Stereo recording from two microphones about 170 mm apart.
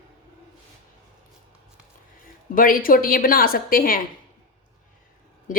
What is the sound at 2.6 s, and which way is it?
A woman's voice, 55° left (ahead or behind).